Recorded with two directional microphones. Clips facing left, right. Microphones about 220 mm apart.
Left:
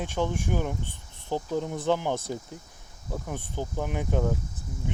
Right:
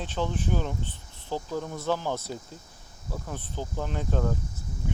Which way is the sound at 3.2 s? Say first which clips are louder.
Left 2 dB; 15° left (ahead or behind).